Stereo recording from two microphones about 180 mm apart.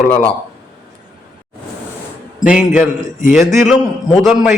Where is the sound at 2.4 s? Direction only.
5° right (ahead or behind).